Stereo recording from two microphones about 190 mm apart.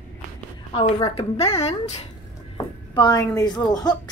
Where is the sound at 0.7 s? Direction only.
30° left (ahead or behind).